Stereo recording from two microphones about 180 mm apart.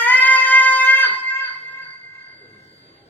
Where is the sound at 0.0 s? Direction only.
10° left (ahead or behind).